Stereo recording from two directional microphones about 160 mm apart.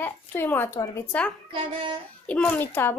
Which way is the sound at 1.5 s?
35° right (ahead or behind).